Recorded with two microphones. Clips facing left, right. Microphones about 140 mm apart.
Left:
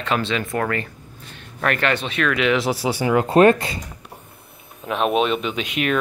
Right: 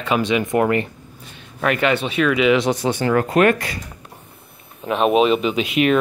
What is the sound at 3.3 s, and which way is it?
Speech, 30° left (ahead or behind).